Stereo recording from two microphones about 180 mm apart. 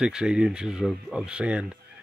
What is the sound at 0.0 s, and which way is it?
Speech, 5° right (ahead or behind).